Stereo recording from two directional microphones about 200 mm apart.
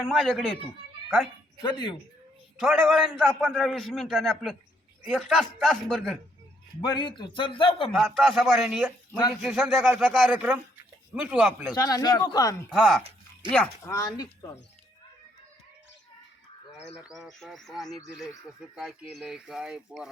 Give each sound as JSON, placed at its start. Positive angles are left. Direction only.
{"t": 0.0, "sound": "a man's voice", "side_deg": 0}
{"t": 1.6, "sound": "a man's voice", "side_deg": 20}
{"t": 2.6, "sound": "a man's voice", "side_deg": 0}
{"t": 6.8, "sound": "a man's voice", "side_deg": 20}
{"t": 7.9, "sound": "a man's voice", "side_deg": 0}
{"t": 11.7, "sound": "a man's voice", "side_deg": 20}
{"t": 12.7, "sound": "a man's voice", "side_deg": -5}
{"t": 13.0, "sound": "a sound", "side_deg": -30}
{"t": 13.5, "sound": "a man's voice", "side_deg": 5}
{"t": 13.9, "sound": "speech", "side_deg": 20}
{"t": 16.7, "sound": "a man's voice", "side_deg": -5}